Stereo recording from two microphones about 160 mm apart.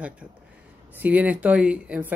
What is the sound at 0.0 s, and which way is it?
Speech, 10° right (ahead or behind).